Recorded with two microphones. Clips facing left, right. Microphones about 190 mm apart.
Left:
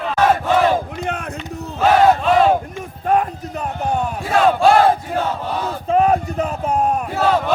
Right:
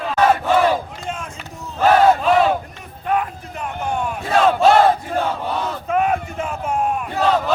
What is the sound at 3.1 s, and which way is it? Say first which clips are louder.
Music: left 4 dB; 40° left (ahead or behind).